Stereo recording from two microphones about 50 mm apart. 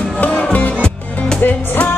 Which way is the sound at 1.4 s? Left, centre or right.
Left.